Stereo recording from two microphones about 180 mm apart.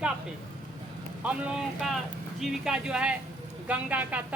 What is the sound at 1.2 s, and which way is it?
A woman's voice, 5° right (ahead or behind).